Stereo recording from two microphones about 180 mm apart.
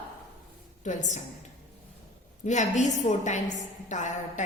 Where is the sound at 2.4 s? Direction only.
40° left (ahead or behind).